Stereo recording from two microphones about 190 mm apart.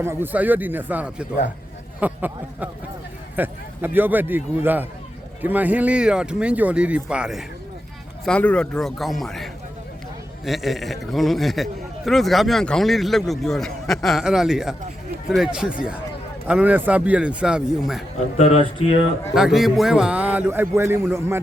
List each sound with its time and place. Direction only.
0.0 s a man's voice: 10° right (ahead or behind)
18.3 s speech: 35° left (ahead or behind)
19.3 s a man's voice: 5° right (ahead or behind)